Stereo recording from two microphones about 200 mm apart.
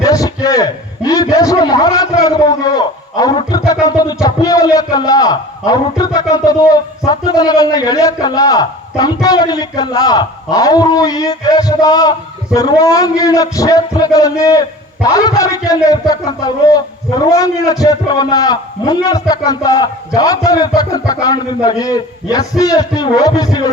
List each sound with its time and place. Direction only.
0.0 s a man's voice: 15° left (ahead or behind)